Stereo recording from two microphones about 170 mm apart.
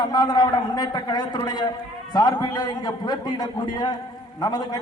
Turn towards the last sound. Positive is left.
turn(degrees=25)  # may be behind; listen again after turning